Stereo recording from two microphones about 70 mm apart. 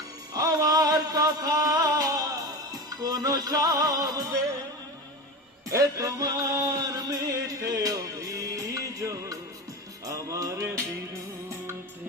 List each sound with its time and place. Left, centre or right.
0.3 s music: right
5.6 s music: right